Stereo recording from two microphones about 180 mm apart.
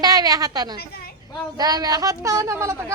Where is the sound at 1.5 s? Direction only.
20° right (ahead or behind).